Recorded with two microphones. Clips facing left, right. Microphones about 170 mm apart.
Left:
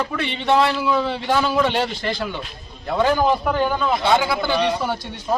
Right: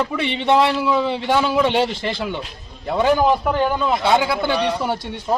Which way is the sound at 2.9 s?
10° right (ahead or behind).